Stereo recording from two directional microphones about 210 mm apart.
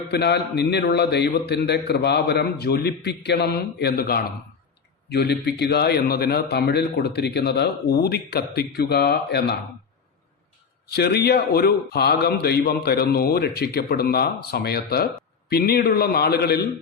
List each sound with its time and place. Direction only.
0.1 s a man's voice: 50° left (ahead or behind)
10.8 s a man's voice: 50° left (ahead or behind)